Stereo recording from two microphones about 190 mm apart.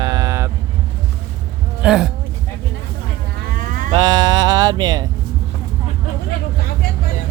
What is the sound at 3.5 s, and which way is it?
Cattle, 45° right (ahead or behind).